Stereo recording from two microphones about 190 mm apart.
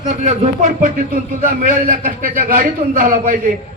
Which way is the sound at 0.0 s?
40° right (ahead or behind).